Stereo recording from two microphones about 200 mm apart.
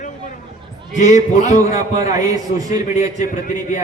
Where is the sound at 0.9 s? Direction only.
35° left (ahead or behind).